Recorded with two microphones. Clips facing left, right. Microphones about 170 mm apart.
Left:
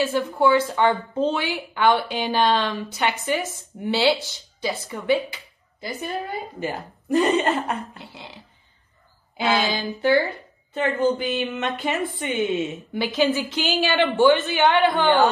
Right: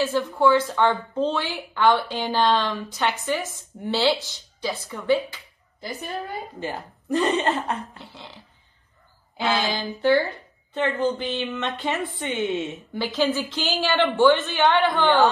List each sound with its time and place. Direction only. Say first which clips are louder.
0.0 s a woman's voice: even; 15° left (ahead or behind)
6.6 s speech: left 2 dB; 5° left (ahead or behind)
9.6 s a woman's voice: left 1 dB; 10° left (ahead or behind)